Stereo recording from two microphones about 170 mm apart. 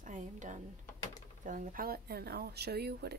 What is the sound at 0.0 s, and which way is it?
Speech, 45° right (ahead or behind).